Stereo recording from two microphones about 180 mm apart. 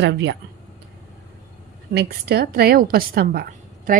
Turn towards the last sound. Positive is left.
turn(degrees=-55)  # may be behind; listen again after turning